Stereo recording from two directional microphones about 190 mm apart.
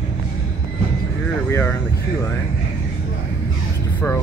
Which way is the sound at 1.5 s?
15° left (ahead or behind).